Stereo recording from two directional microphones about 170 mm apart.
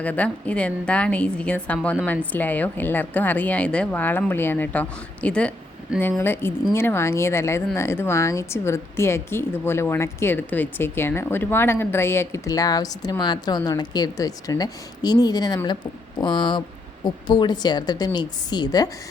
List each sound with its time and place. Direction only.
0.0 s speech: 10° left (ahead or behind)